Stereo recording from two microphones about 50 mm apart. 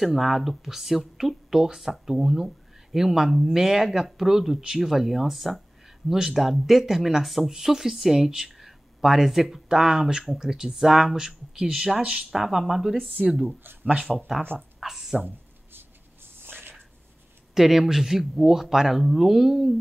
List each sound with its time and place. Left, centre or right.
0.0 s speech: centre
12.0 s speech: centre
12.3 s speech: centre
14.8 s a sound: centre
15.2 s a sound: right
17.6 s speech: centre